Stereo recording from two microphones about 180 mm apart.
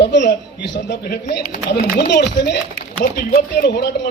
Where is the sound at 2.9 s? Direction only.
55° left (ahead or behind).